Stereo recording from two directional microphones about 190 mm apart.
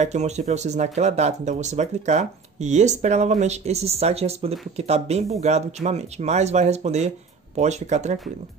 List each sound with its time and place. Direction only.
0.0 s speech: 35° right (ahead or behind)